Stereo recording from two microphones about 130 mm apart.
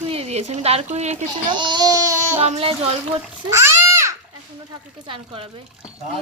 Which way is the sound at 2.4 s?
50° right (ahead or behind).